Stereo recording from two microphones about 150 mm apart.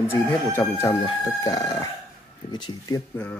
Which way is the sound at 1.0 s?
25° left (ahead or behind).